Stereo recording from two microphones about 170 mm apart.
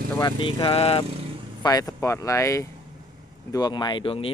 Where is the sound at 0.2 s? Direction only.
25° left (ahead or behind).